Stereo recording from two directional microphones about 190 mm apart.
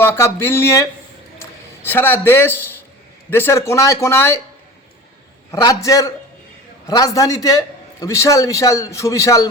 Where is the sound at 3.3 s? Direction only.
10° left (ahead or behind).